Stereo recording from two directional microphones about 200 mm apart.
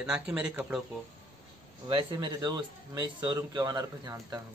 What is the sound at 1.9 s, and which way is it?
Speech, 25° right (ahead or behind).